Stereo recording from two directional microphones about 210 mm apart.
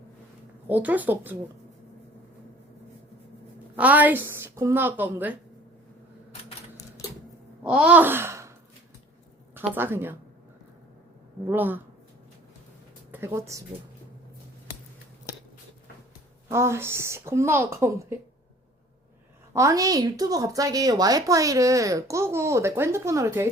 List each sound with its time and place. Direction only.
0.7 s a woman's voice: 10° right (ahead or behind)
3.8 s a woman's voice: 10° right (ahead or behind)
7.6 s a sound: 5° right (ahead or behind)
9.6 s a woman's voice: 10° right (ahead or behind)
11.4 s a woman's voice: 10° right (ahead or behind)
13.1 s speech: 10° right (ahead or behind)
16.5 s a woman's voice: 15° right (ahead or behind)
19.5 s a woman's voice: 15° right (ahead or behind)